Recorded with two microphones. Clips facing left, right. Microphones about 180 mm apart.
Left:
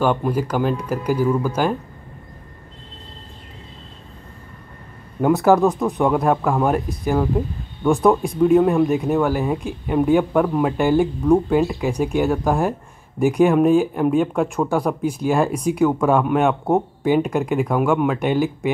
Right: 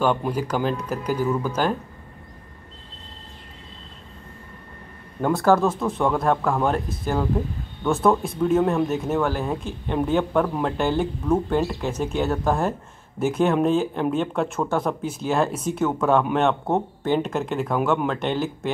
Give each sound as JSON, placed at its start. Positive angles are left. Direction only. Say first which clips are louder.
{"t": 0.0, "sound": "speech", "louder": "left 3 dB", "side_deg": 10}
{"t": 5.2, "sound": "speech", "louder": "left 4 dB", "side_deg": 15}
{"t": 9.4, "sound": "speech", "louder": "left 4 dB", "side_deg": 0}